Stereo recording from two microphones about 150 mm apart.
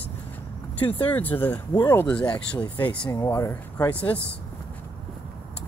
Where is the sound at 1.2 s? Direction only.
10° left (ahead or behind).